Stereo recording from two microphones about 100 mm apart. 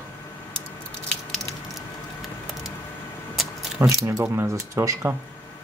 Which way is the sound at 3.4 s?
Centre (ahead or behind).